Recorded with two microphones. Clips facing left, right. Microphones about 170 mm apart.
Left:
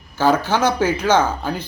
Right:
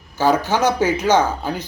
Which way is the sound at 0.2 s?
15° right (ahead or behind).